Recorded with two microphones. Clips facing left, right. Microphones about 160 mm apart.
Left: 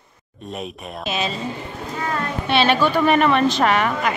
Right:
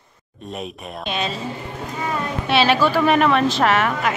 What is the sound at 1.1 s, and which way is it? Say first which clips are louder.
A woman's voice: left 1 dB; centre (ahead or behind).